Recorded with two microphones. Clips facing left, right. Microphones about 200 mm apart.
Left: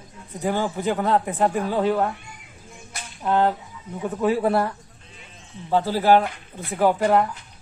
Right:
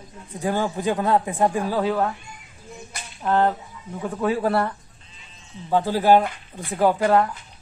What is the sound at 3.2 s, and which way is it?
A man's voice, 5° left (ahead or behind).